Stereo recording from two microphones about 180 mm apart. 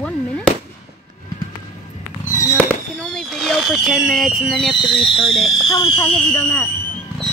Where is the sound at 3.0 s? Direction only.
5° left (ahead or behind).